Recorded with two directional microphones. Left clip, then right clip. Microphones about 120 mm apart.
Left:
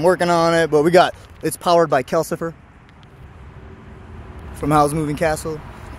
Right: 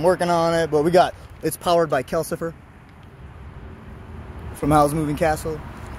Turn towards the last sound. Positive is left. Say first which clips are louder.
# left 2 dB
turn(degrees=55)  # may be behind; listen again after turning